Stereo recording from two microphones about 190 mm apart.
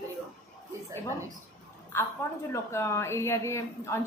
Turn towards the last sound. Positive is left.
turn(degrees=15)  # may be behind; listen again after turning